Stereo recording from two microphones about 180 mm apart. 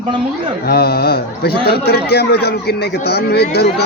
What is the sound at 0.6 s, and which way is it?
Speech, 60° left (ahead or behind).